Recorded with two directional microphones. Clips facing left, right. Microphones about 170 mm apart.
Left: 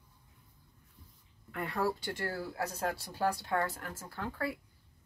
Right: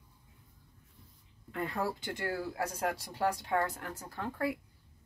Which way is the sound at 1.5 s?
25° right (ahead or behind).